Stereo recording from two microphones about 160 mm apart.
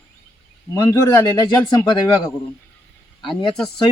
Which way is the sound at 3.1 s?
30° left (ahead or behind).